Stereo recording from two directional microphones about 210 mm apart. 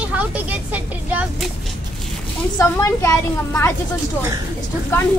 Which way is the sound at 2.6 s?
15° left (ahead or behind).